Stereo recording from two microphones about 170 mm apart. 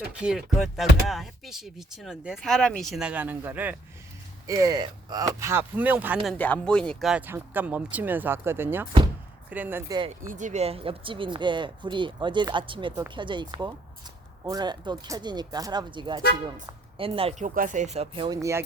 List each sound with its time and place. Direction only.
0.1 s speech: 5° right (ahead or behind)
6.3 s speech: 10° left (ahead or behind); by 9.8 s 10° right (ahead or behind)
10.3 s speech: 45° right (ahead or behind)
17.4 s speech: 50° right (ahead or behind); by 18.3 s 30° right (ahead or behind)
18.3 s speech: 15° right (ahead or behind)